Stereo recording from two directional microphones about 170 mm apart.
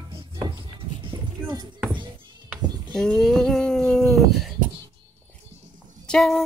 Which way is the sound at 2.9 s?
5° left (ahead or behind).